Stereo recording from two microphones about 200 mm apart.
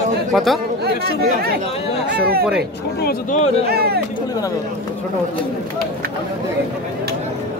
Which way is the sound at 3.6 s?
50° right (ahead or behind).